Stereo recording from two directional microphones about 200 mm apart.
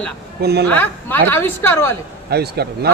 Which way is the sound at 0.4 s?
55° right (ahead or behind).